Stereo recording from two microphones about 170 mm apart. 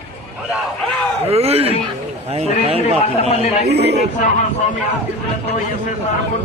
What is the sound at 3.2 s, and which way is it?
Speech, 35° left (ahead or behind).